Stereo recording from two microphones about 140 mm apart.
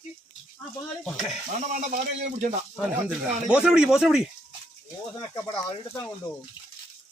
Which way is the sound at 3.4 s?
5° right (ahead or behind).